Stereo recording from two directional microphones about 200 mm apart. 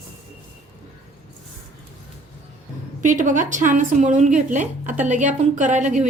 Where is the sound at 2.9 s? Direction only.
40° right (ahead or behind).